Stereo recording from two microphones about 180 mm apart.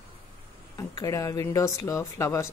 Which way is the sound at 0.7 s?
20° left (ahead or behind).